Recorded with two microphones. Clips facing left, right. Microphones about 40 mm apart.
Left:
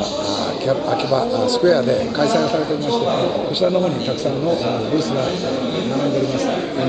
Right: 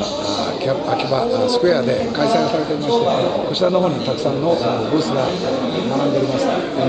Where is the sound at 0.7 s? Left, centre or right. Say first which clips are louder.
Left 1 dB; centre.